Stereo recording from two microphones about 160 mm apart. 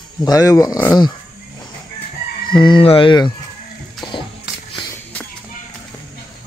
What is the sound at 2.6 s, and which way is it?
Speech, 30° left (ahead or behind).